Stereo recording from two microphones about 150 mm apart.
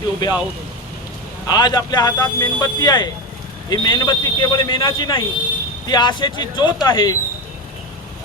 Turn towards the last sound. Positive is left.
turn(degrees=30)  # may be behind; listen again after turning